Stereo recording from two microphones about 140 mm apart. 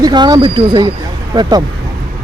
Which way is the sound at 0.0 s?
30° right (ahead or behind).